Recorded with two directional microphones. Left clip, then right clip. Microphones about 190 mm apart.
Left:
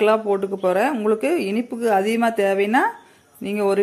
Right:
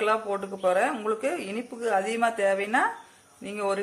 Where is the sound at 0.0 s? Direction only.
30° left (ahead or behind).